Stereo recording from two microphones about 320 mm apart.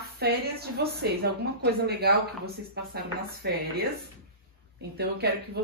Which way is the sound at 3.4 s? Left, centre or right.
Right.